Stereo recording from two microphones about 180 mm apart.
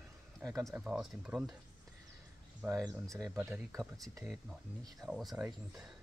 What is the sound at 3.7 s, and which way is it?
Speech, centre (ahead or behind).